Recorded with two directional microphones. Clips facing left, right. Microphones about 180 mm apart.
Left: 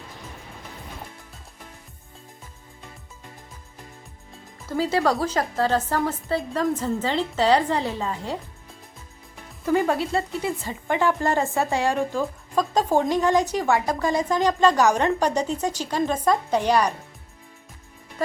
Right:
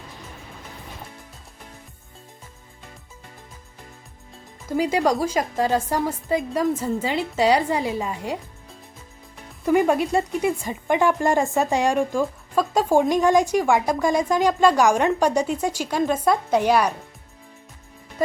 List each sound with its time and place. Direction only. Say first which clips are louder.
4.8 s a woman's voice: right 1 dB; 15° right (ahead or behind)
9.6 s a woman's voice: right 3 dB; 15° right (ahead or behind)